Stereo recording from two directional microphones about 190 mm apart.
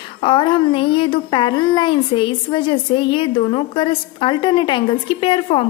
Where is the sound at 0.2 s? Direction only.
25° left (ahead or behind).